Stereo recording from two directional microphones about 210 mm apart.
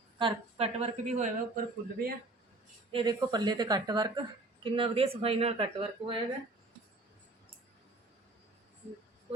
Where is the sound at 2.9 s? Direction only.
20° right (ahead or behind).